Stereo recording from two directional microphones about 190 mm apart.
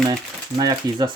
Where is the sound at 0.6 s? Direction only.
20° right (ahead or behind).